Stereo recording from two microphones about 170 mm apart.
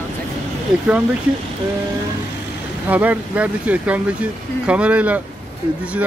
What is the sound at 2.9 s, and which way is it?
Speech, 10° right (ahead or behind).